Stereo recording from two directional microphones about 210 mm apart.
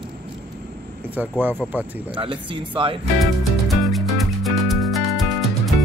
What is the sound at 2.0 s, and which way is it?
Speech, 25° right (ahead or behind).